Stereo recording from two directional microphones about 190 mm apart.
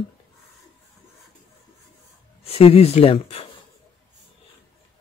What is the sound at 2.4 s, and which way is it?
Speech, 30° left (ahead or behind).